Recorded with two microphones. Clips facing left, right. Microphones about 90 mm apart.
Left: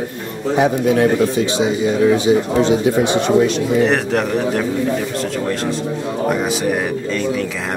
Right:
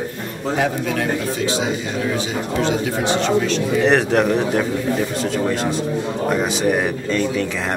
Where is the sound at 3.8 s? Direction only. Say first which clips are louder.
Even; centre (ahead or behind).